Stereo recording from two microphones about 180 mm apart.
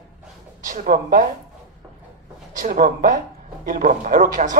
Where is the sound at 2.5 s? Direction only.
45° right (ahead or behind).